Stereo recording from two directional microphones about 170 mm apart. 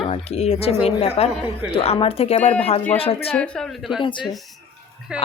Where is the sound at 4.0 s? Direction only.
30° left (ahead or behind).